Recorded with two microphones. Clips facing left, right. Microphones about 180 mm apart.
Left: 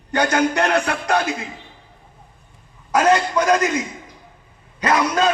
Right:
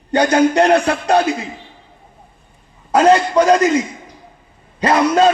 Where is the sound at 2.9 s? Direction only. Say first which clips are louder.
Right 5 dB; 30° right (ahead or behind).